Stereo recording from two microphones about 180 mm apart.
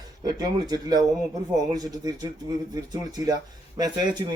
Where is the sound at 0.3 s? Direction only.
20° right (ahead or behind).